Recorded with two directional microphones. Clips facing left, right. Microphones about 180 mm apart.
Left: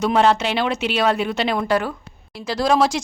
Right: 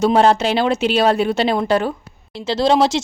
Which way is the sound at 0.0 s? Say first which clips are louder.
Right 3 dB; 35° right (ahead or behind).